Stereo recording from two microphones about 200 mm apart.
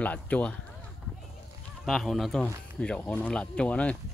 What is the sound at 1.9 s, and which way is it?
Speech, centre (ahead or behind).